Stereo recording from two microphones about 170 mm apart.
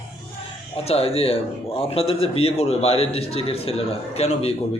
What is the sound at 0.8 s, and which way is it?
A man's voice, 35° left (ahead or behind).